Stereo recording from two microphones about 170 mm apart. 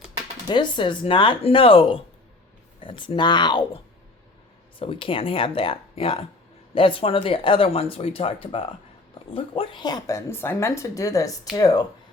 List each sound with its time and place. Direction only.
0.4 s speech: 25° left (ahead or behind)
4.8 s speech: 30° left (ahead or behind)